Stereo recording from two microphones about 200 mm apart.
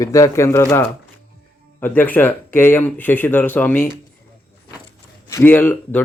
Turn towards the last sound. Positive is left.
turn(degrees=10)  # may be behind; listen again after turning